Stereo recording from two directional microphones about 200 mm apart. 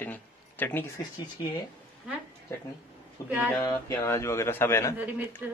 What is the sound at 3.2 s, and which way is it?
Speech, 10° right (ahead or behind).